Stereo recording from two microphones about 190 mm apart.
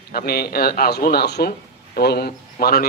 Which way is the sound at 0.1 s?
55° left (ahead or behind).